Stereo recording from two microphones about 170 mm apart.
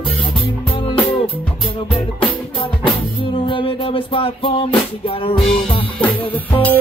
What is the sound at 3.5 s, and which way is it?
Music, 30° left (ahead or behind).